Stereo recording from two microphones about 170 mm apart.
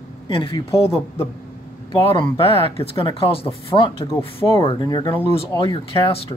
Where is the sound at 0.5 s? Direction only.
15° left (ahead or behind).